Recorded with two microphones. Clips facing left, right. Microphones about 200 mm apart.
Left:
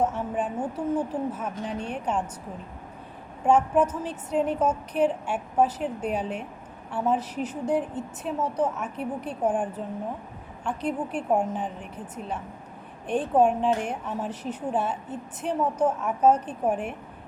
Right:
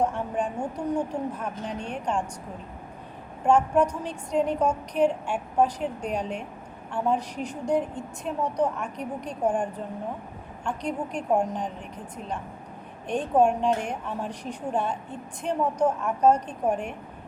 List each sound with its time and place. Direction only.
0.0 s a woman's voice: 5° left (ahead or behind)
3.4 s a woman's voice: 5° left (ahead or behind)
13.1 s a woman's voice: 5° left (ahead or behind)